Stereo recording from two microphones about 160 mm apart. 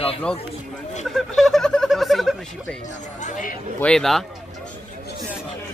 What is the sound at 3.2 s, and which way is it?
Speech, 55° left (ahead or behind).